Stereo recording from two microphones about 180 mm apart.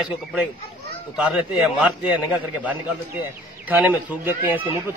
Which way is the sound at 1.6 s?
5° right (ahead or behind).